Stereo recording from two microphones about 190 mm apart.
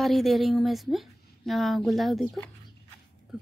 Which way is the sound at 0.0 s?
Centre (ahead or behind).